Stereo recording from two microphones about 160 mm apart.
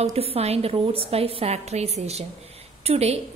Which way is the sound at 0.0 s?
40° right (ahead or behind).